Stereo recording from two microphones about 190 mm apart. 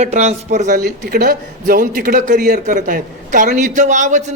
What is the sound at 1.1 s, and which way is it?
A man's voice, 50° right (ahead or behind).